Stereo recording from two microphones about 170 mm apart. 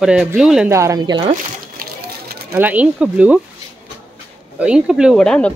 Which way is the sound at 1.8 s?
60° right (ahead or behind).